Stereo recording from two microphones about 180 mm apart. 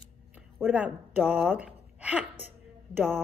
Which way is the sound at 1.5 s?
5° right (ahead or behind).